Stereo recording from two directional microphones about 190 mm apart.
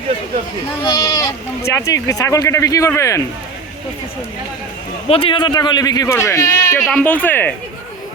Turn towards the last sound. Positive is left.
turn(degrees=10)  # may be behind; listen again after turning